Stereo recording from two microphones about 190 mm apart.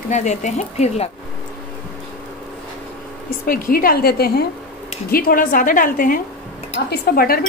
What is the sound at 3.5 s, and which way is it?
Speech, 50° left (ahead or behind).